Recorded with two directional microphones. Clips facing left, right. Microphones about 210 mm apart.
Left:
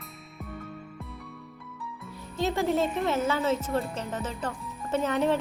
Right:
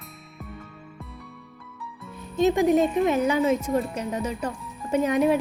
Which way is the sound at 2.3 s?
15° right (ahead or behind).